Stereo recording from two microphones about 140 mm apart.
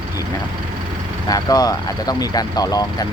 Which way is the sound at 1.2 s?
25° left (ahead or behind).